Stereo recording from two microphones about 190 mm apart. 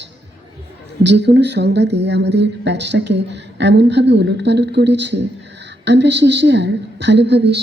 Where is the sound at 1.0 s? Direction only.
65° right (ahead or behind).